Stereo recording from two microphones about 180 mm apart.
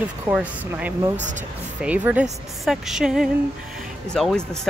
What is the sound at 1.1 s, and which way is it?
Speech, 40° right (ahead or behind).